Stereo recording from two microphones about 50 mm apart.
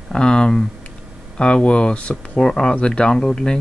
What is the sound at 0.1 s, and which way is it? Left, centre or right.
Speech, centre.